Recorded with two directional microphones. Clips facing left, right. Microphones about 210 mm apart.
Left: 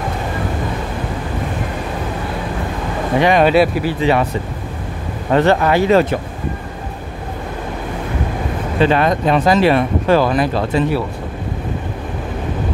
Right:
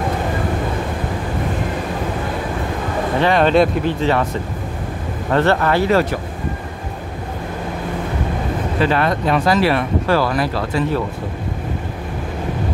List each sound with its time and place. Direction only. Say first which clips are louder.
3.2 s speech: left 2 dB; 15° left (ahead or behind)
5.3 s speech: left 3 dB; 15° left (ahead or behind)
8.8 s speech: left 4 dB; 20° left (ahead or behind)